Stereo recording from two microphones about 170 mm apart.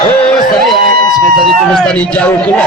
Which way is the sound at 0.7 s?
25° left (ahead or behind).